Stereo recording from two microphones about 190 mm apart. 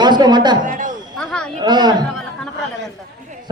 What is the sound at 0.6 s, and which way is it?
Speech, 45° right (ahead or behind).